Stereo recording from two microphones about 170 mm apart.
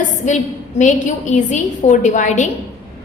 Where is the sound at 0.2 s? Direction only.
45° left (ahead or behind).